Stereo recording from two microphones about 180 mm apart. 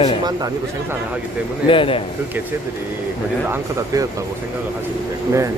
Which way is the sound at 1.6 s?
30° left (ahead or behind).